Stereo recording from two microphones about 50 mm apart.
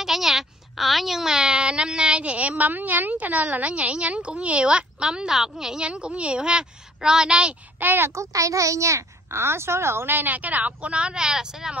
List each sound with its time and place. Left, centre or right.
0.0 s a woman's voice: centre
5.8 s speech: right
7.8 s a child's voice: right
8.1 s a woman's voice: right; by 11.7 s centre